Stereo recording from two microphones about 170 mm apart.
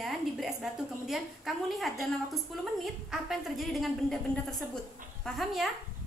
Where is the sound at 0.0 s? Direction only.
Centre (ahead or behind).